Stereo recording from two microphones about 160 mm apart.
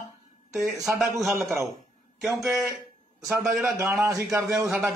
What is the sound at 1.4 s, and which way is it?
Speech, 15° right (ahead or behind).